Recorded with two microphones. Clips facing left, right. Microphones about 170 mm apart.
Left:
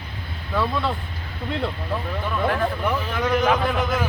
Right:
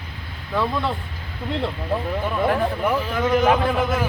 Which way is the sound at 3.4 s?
5° right (ahead or behind).